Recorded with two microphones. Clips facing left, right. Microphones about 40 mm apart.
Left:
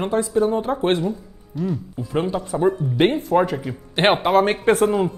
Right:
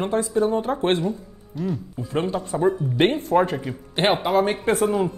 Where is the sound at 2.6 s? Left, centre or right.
Left.